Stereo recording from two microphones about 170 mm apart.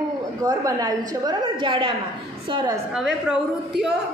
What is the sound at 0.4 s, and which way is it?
A woman's voice, 20° right (ahead or behind).